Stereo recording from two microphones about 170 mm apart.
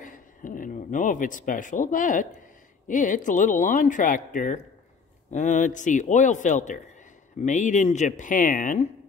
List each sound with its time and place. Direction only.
0.0 s a man's voice: 50° left (ahead or behind)